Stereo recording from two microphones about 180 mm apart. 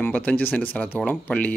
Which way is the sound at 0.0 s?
10° left (ahead or behind).